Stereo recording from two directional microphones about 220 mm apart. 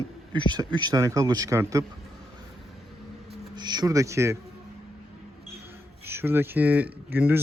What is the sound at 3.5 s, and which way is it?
Speech, 20° right (ahead or behind).